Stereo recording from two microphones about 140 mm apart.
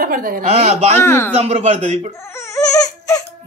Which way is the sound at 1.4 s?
50° right (ahead or behind).